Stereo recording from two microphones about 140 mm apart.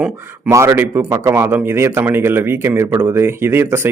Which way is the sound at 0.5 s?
20° right (ahead or behind).